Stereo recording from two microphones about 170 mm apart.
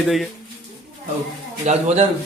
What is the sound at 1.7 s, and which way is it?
Speech, 40° right (ahead or behind).